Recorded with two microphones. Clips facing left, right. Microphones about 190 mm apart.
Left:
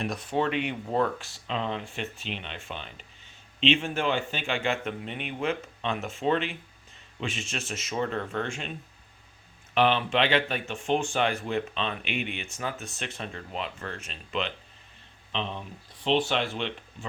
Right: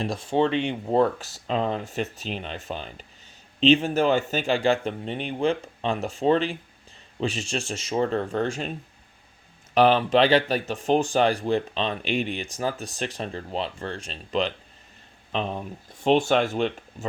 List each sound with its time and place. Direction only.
0.0 s speech: 30° right (ahead or behind)
9.7 s speech: 40° right (ahead or behind)